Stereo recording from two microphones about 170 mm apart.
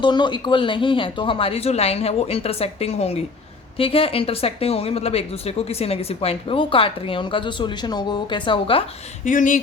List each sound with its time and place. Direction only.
0.0 s speech: 25° left (ahead or behind)
9.2 s speech: 50° left (ahead or behind)